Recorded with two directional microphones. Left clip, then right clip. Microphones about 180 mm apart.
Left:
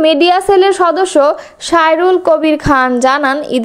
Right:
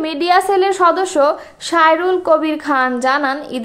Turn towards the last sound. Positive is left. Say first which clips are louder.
# left 5 dB
turn(degrees=35)  # may be behind; listen again after turning